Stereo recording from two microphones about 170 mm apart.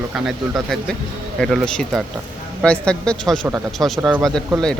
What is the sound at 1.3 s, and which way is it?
Speech, 5° left (ahead or behind).